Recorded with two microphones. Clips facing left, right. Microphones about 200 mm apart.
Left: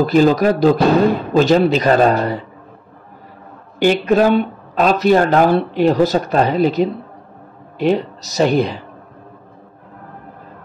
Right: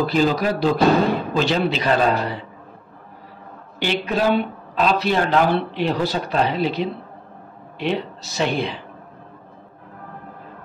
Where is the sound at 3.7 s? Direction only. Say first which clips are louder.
Left 9 dB; 45° left (ahead or behind).